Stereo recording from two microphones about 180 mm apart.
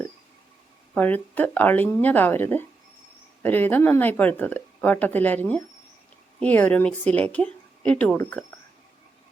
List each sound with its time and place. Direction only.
0.9 s speech: 10° left (ahead or behind)